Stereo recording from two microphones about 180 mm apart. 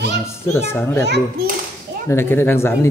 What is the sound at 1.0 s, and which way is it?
Speech, 65° right (ahead or behind).